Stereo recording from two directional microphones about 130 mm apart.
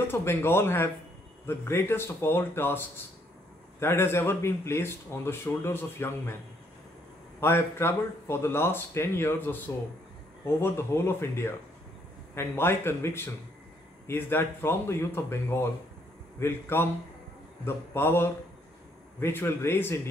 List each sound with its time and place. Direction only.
0.1 s speech: 20° left (ahead or behind)
3.8 s speech: 20° left (ahead or behind)
7.3 s speech: 20° left (ahead or behind)